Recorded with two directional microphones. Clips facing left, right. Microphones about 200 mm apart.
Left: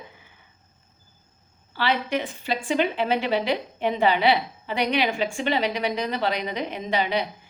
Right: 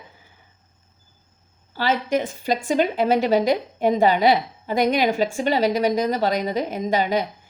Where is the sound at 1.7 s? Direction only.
40° right (ahead or behind).